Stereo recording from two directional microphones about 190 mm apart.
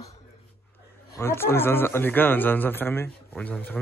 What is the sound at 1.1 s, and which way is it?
Speech, 15° left (ahead or behind).